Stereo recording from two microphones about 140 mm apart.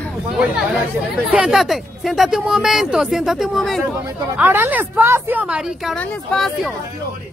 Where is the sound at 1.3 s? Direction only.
5° right (ahead or behind).